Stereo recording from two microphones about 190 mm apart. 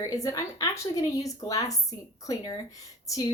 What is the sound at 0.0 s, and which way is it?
A woman's voice, 15° left (ahead or behind).